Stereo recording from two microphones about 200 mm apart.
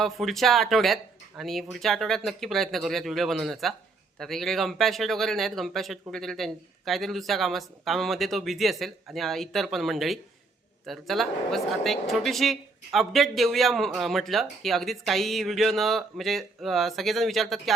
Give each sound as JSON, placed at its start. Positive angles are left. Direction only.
{"t": 0.0, "sound": "speech", "side_deg": 0}